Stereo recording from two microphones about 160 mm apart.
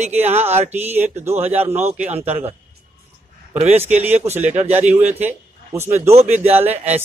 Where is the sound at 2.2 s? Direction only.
40° right (ahead or behind).